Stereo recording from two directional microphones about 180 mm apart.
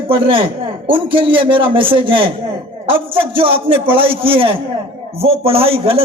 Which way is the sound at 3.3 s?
30° right (ahead or behind).